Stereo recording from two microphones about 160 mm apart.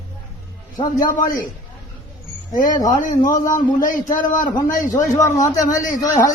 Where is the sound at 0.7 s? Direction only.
55° left (ahead or behind).